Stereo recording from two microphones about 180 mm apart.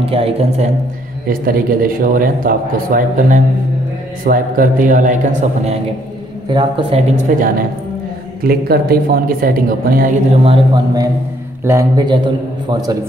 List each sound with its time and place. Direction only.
0.0 s speech: 35° right (ahead or behind)
1.2 s a man's voice: 50° right (ahead or behind)
6.5 s a man's voice: 25° right (ahead or behind)
7.2 s a man's voice: 50° right (ahead or behind)
10.4 s speech: 30° right (ahead or behind)
11.6 s a man's voice: 15° right (ahead or behind)